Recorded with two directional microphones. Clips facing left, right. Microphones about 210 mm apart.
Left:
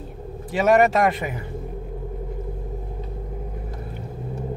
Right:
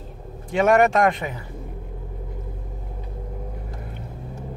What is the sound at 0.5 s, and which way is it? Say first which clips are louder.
Speech: even; centre (ahead or behind).